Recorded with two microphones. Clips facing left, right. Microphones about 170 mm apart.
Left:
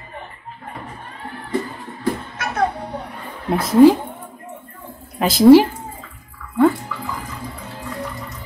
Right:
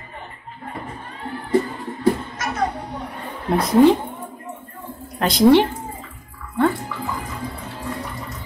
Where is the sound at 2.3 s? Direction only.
60° left (ahead or behind).